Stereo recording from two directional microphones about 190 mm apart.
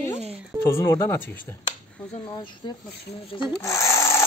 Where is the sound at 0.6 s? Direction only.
15° left (ahead or behind).